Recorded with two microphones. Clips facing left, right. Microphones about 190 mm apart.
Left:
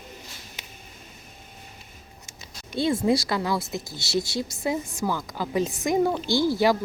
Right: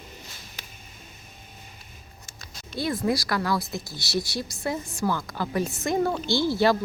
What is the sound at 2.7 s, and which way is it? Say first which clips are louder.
Speech: left 4 dB; 25° left (ahead or behind).